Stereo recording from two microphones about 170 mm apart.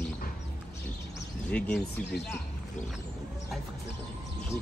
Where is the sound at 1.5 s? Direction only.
5° left (ahead or behind).